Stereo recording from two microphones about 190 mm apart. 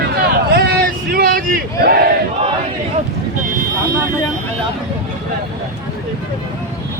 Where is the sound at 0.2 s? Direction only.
60° right (ahead or behind).